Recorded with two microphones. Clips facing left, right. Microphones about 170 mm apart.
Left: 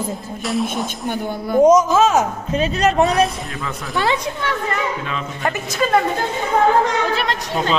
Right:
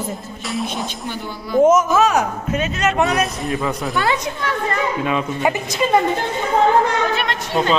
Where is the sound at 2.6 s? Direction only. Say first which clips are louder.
Left 3 dB; 35° left (ahead or behind).